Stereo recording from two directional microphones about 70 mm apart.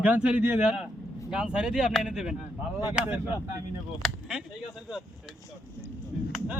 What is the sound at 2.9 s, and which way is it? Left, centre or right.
Speech, centre.